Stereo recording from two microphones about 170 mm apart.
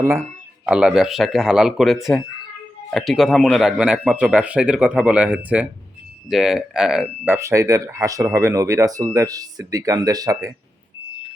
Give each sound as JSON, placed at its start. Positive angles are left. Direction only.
{"t": 0.0, "sound": "speech", "side_deg": -15}
{"t": 0.6, "sound": "speech", "side_deg": -5}
{"t": 7.3, "sound": "speech", "side_deg": -15}